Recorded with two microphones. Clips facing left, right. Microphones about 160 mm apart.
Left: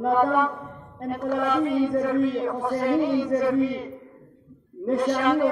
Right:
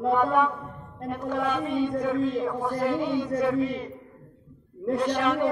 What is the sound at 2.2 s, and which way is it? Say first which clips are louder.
Speech: left 2 dB; 70° left (ahead or behind).